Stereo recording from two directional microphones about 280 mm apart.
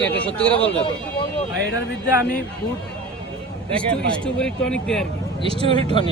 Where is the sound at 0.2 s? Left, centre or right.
Centre.